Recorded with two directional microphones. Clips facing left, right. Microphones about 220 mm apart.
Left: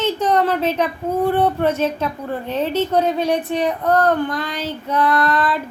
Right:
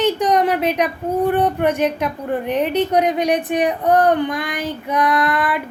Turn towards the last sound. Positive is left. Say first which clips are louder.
# even
turn(degrees=-15)  # may be behind; listen again after turning